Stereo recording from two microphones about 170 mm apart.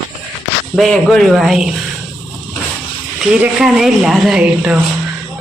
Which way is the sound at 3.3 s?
5° right (ahead or behind).